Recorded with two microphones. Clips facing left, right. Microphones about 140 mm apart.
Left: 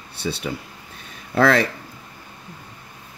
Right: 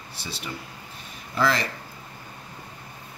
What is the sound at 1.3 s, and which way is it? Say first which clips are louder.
Speech: left 7 dB; 60° left (ahead or behind).